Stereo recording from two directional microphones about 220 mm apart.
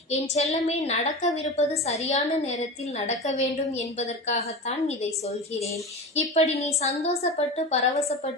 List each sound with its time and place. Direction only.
0.1 s a woman's voice: 30° left (ahead or behind)